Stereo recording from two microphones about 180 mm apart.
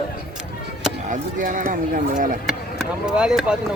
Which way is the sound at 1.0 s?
45° right (ahead or behind).